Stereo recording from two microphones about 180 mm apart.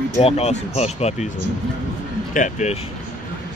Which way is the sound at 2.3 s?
45° left (ahead or behind).